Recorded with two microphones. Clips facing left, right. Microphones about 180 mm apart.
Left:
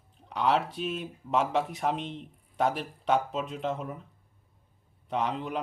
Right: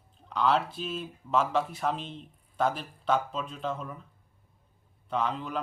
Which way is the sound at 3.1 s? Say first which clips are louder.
Left 2 dB; 20° left (ahead or behind).